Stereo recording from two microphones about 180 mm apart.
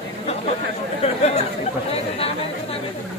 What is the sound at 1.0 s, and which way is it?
Chatter, 35° left (ahead or behind).